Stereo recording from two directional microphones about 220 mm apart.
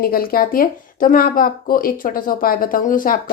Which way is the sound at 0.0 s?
40° left (ahead or behind).